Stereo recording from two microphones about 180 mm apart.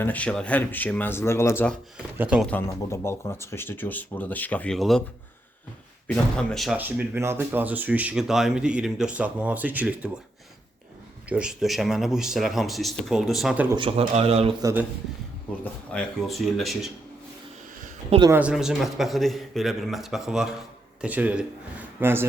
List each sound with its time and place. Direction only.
0.0 s speech: 10° left (ahead or behind)
2.1 s speech: 5° right (ahead or behind)
2.5 s speech: 15° left (ahead or behind)
6.1 s speech: 5° left (ahead or behind)
6.7 s speech: 10° right (ahead or behind)
11.3 s speech: 5° right (ahead or behind)
13.7 s speech: 30° right (ahead or behind)
14.6 s speech: 15° right (ahead or behind)
15.6 s speech: 5° left (ahead or behind)
18.3 s a man's voice: 10° right (ahead or behind)